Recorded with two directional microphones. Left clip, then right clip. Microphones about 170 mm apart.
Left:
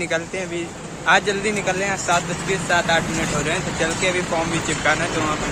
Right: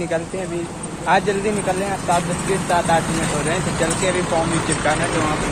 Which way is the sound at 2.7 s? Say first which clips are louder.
Right 1 dB; 10° left (ahead or behind).